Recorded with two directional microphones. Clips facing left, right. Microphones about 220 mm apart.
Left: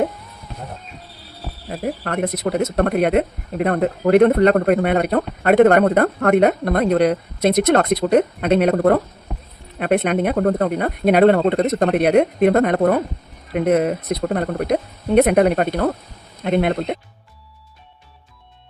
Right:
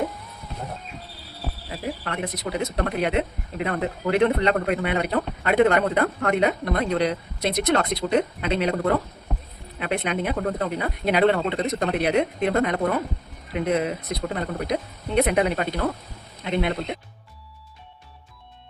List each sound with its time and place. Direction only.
1.7 s speech: 50° left (ahead or behind)